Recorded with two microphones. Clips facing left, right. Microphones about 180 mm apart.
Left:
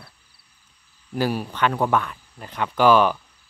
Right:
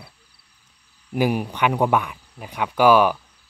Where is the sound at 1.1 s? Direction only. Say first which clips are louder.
Right 3 dB; 15° right (ahead or behind).